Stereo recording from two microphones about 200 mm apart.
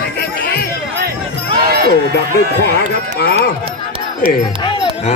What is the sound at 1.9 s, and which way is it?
Speech, 55° left (ahead or behind).